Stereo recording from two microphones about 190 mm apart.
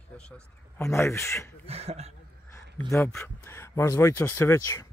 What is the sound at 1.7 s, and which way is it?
Speech, 35° right (ahead or behind).